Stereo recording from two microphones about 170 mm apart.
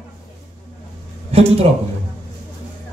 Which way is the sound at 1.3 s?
35° right (ahead or behind).